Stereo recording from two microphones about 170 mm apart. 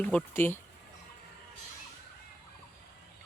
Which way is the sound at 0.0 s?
10° left (ahead or behind).